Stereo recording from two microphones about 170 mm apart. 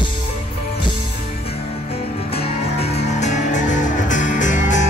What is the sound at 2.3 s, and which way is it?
Music, 35° left (ahead or behind).